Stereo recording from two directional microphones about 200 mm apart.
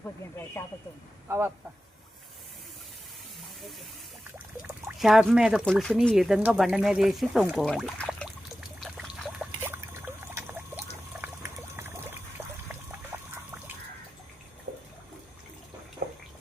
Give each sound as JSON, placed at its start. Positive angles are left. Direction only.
{"t": 0.6, "sound": "speech", "side_deg": 10}
{"t": 1.3, "sound": "speech", "side_deg": -10}
{"t": 4.6, "sound": "speech", "side_deg": 0}
{"t": 8.8, "sound": "pour", "side_deg": 0}
{"t": 9.6, "sound": "rodents", "side_deg": -10}
{"t": 14.7, "sound": "water", "side_deg": -45}